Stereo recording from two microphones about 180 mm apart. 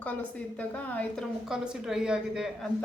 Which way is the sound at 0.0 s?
10° left (ahead or behind).